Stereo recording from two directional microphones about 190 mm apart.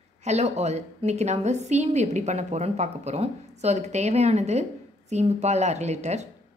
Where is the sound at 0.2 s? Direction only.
35° right (ahead or behind).